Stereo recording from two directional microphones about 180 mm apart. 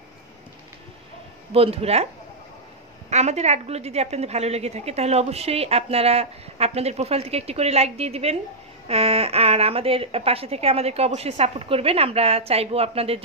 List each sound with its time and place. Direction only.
1.5 s a woman's voice: 30° right (ahead or behind)
3.1 s a woman's voice: 40° right (ahead or behind)